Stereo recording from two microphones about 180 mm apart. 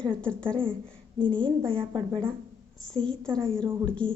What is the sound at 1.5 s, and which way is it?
Speech, 30° right (ahead or behind).